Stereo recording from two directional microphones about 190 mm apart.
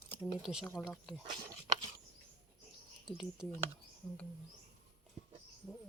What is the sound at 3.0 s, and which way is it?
Speech, centre (ahead or behind).